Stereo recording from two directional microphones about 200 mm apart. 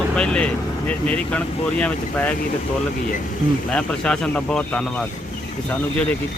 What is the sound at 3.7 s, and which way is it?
Speech, 5° left (ahead or behind).